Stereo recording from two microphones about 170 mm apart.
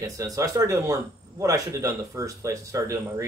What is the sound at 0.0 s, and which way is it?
Speech, 20° right (ahead or behind).